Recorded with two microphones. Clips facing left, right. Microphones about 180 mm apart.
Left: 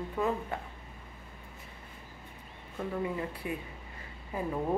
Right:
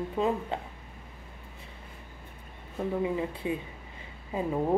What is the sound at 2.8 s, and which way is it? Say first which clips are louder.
Speech: right 4 dB; 20° right (ahead or behind).